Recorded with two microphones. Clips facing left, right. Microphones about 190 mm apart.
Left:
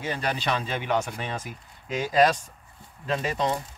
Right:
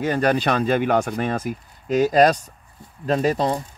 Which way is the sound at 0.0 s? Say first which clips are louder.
Right 9 dB; 50° right (ahead or behind).